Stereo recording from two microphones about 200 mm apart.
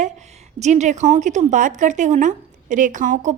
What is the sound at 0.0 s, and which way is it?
Speech, 35° right (ahead or behind).